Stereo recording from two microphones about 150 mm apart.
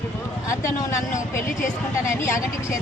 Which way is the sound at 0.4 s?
20° left (ahead or behind).